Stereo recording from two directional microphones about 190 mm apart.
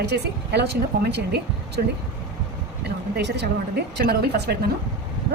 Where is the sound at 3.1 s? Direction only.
60° right (ahead or behind).